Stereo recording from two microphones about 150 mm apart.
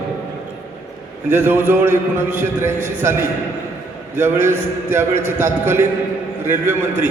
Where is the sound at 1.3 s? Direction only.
15° right (ahead or behind).